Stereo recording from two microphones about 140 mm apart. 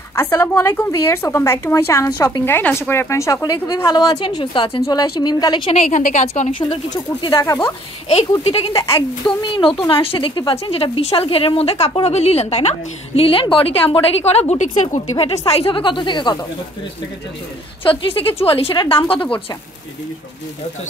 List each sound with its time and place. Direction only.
0.1 s a woman's voice: 20° left (ahead or behind)
2.4 s a woman's voice: 15° left (ahead or behind)
5.7 s a woman's voice: 60° left (ahead or behind)
6.7 s a woman's voice: 35° left (ahead or behind); by 15.0 s 55° left (ahead or behind)
15.4 s a woman's voice: 45° left (ahead or behind)
17.8 s a woman's voice: 40° left (ahead or behind)